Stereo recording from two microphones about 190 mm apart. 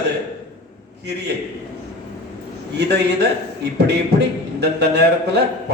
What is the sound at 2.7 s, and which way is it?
A man's voice, 60° right (ahead or behind).